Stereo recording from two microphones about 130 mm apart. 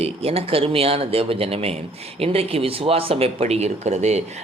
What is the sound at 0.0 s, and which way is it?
A man's voice, 50° right (ahead or behind).